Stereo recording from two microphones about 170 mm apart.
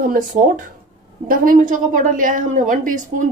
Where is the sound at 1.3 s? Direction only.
55° right (ahead or behind).